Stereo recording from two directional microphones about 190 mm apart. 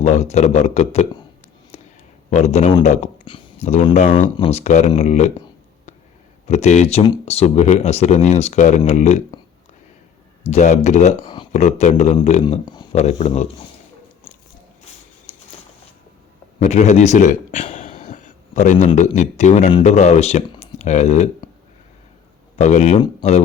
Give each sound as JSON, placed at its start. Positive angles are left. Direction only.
{"t": 0.0, "sound": "speech", "side_deg": 35}
{"t": 2.3, "sound": "speech", "side_deg": 35}
{"t": 6.5, "sound": "speech", "side_deg": 35}
{"t": 10.4, "sound": "speech", "side_deg": 35}
{"t": 12.6, "sound": "a sound", "side_deg": 20}
{"t": 12.9, "sound": "speech", "side_deg": 35}
{"t": 16.6, "sound": "a man's voice", "side_deg": 35}
{"t": 22.5, "sound": "speech", "side_deg": 40}